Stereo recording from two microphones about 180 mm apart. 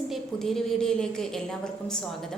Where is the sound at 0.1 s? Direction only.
Centre (ahead or behind).